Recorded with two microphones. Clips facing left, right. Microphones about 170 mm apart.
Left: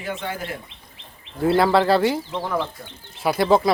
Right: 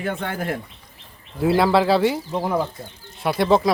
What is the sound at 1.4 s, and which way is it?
Speech, centre (ahead or behind).